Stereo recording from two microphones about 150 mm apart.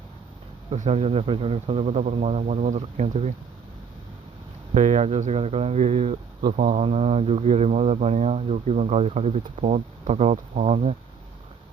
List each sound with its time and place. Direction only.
0.7 s speech: 45° right (ahead or behind)
4.7 s speech: 50° right (ahead or behind)